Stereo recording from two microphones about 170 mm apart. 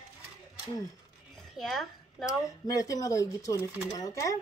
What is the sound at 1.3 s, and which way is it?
Dishes, centre (ahead or behind).